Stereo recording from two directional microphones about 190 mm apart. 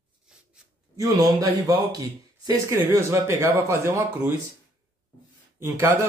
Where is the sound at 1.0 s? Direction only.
20° right (ahead or behind).